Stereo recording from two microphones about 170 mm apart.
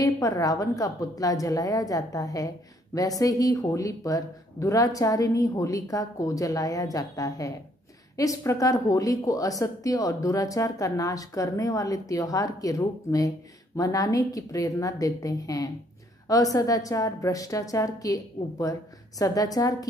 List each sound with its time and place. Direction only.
0.0 s a woman's voice: 20° left (ahead or behind)